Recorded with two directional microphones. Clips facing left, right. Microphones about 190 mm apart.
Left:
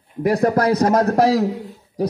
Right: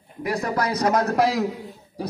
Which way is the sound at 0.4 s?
50° left (ahead or behind).